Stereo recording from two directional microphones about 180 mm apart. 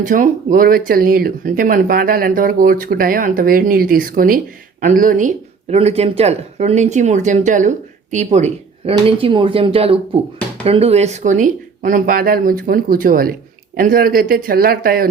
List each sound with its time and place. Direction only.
0.0 s speech: 50° right (ahead or behind)
5.7 s speech: 35° right (ahead or behind); by 15.1 s 55° right (ahead or behind)